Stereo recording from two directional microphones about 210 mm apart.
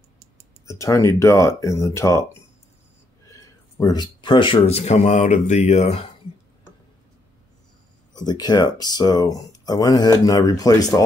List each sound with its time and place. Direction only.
0.7 s speech: 15° left (ahead or behind)
3.3 s speech: 15° left (ahead or behind)
8.1 s speech: 20° left (ahead or behind)